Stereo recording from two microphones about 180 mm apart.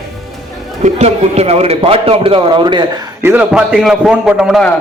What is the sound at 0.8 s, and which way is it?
A man's voice, 40° right (ahead or behind).